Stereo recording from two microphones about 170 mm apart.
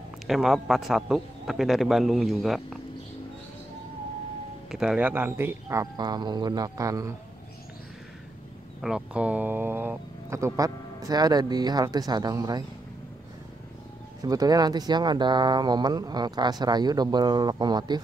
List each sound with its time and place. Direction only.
0.3 s a man's voice: centre (ahead or behind)
4.6 s speech: 5° right (ahead or behind); by 7.2 s 20° right (ahead or behind)
8.8 s speech: 5° right (ahead or behind); by 12.6 s 20° right (ahead or behind)
14.2 s speech: 20° right (ahead or behind)